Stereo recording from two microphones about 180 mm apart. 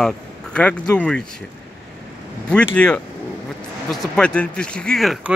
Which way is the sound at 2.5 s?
5° left (ahead or behind).